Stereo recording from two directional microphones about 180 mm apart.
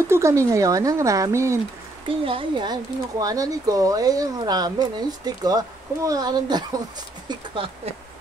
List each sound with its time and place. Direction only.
0.1 s speech: 15° right (ahead or behind)
2.0 s speech: 30° right (ahead or behind)